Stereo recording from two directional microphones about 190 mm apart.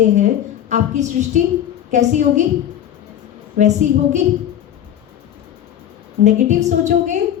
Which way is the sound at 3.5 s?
35° right (ahead or behind).